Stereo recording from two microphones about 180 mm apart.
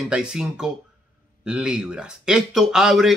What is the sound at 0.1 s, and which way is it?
Speech, 5° right (ahead or behind).